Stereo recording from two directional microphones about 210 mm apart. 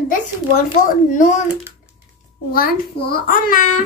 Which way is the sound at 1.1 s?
35° left (ahead or behind).